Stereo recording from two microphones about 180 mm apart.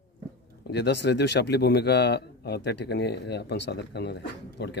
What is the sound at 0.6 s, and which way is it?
A man's voice, 70° left (ahead or behind).